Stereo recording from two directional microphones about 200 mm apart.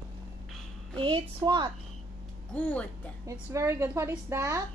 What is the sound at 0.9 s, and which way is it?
Speech, 25° right (ahead or behind).